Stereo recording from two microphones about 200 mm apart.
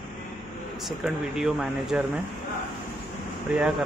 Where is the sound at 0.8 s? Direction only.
5° right (ahead or behind).